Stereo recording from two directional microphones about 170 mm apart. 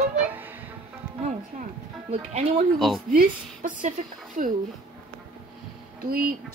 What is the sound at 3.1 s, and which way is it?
A woman's voice, 55° right (ahead or behind).